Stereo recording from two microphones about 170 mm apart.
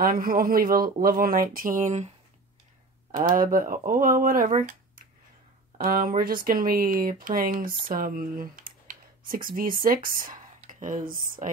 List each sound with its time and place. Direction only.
0.0 s speech: 55° right (ahead or behind)
4.6 s a sound: 50° right (ahead or behind)
5.9 s speech: 55° right (ahead or behind)